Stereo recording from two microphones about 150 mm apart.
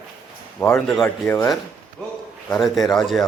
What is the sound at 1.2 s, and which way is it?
Speech, 15° left (ahead or behind).